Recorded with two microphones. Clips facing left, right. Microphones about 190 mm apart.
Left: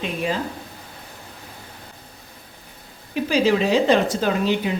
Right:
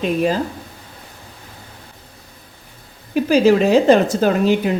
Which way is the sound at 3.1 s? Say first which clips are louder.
Right 6 dB; 45° right (ahead or behind).